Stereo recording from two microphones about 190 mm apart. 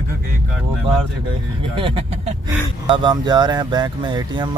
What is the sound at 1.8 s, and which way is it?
Speech, 25° right (ahead or behind).